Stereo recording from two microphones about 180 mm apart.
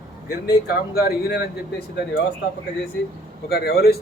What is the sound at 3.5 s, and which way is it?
Speech, 60° left (ahead or behind).